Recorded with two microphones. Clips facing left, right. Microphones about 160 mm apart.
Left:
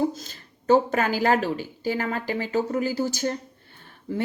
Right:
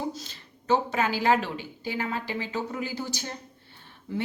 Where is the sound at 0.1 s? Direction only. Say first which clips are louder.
Left 2 dB; 45° left (ahead or behind).